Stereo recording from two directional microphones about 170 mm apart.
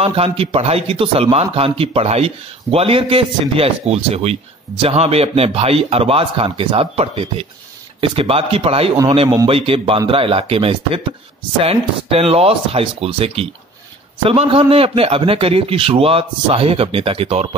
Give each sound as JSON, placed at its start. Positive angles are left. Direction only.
{"t": 0.0, "sound": "a man's voice", "side_deg": -35}